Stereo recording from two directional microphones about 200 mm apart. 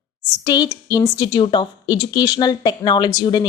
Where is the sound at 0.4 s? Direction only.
20° left (ahead or behind).